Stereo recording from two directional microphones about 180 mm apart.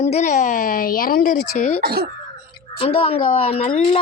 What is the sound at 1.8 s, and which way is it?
Speech, 60° right (ahead or behind).